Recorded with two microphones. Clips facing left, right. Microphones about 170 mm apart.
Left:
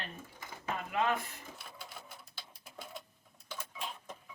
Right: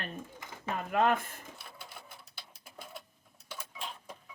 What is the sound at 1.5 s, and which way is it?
Sewing machine, centre (ahead or behind).